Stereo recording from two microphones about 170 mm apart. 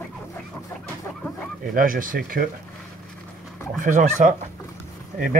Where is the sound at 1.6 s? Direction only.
55° right (ahead or behind).